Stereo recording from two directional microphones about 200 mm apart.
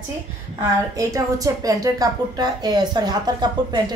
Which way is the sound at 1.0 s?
15° right (ahead or behind).